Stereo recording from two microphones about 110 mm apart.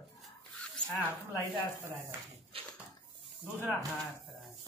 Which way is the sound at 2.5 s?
60° right (ahead or behind).